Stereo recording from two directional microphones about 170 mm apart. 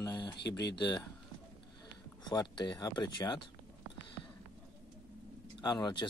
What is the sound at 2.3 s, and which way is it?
Speech, 25° left (ahead or behind).